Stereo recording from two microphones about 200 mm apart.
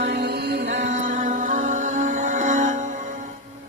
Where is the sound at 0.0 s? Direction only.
55° right (ahead or behind).